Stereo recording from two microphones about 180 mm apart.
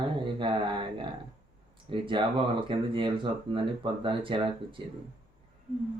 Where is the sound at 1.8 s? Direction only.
25° right (ahead or behind).